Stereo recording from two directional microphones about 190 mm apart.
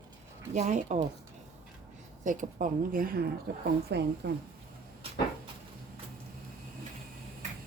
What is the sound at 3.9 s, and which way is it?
Speech, 65° right (ahead or behind).